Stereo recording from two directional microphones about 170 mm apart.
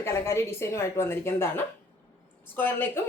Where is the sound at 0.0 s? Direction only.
15° left (ahead or behind).